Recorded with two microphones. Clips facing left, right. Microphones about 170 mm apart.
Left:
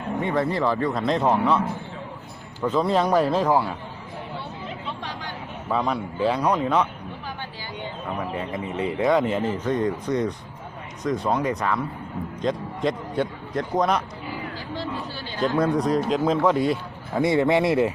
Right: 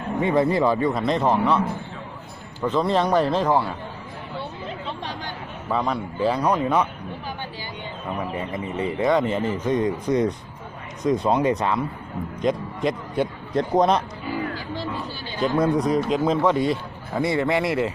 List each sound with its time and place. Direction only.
0.2 s speech: 15° right (ahead or behind); by 3.7 s 5° left (ahead or behind)
5.6 s speech: centre (ahead or behind)
8.2 s speech: 5° right (ahead or behind)
9.6 s speech: 15° right (ahead or behind)
12.4 s a man's voice: 10° right (ahead or behind)
13.6 s speech: 30° right (ahead or behind)
15.6 s speech: 5° right (ahead or behind)
17.2 s speech: 20° left (ahead or behind)